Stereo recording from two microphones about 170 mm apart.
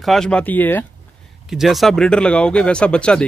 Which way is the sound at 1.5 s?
Centre (ahead or behind).